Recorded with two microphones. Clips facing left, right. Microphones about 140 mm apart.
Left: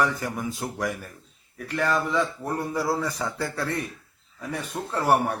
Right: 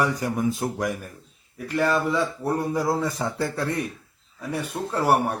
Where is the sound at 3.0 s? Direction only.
25° right (ahead or behind).